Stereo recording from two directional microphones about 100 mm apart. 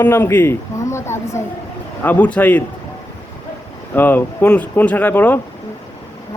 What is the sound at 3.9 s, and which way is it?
A man's voice, 20° left (ahead or behind).